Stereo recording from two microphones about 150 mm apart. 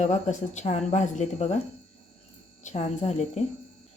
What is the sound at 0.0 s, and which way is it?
Speech, 50° left (ahead or behind).